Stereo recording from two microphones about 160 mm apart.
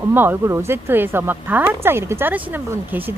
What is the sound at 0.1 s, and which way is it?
Speech, 10° right (ahead or behind).